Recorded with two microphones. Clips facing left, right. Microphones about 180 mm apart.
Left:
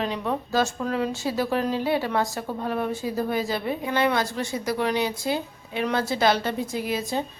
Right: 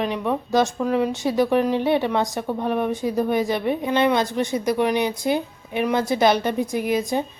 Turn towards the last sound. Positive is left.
turn(degrees=-15)  # may be behind; listen again after turning